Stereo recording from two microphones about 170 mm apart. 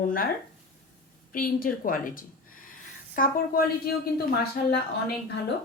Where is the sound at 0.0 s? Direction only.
60° left (ahead or behind).